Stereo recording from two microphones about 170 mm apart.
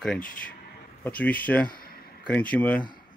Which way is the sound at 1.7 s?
60° left (ahead or behind).